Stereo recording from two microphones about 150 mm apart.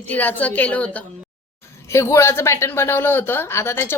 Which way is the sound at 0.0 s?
10° left (ahead or behind).